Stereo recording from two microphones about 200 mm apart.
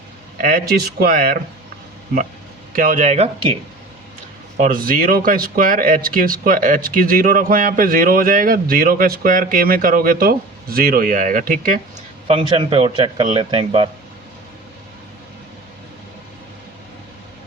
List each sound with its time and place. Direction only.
0.3 s speech: 45° right (ahead or behind)
2.7 s speech: 40° right (ahead or behind)
4.5 s speech: 40° right (ahead or behind)
12.3 s speech: 25° right (ahead or behind)